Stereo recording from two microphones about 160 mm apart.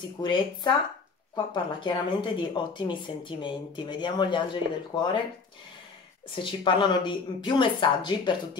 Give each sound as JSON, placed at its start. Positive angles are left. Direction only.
{"t": 0.2, "sound": "speech", "side_deg": 30}
{"t": 6.3, "sound": "speech", "side_deg": 30}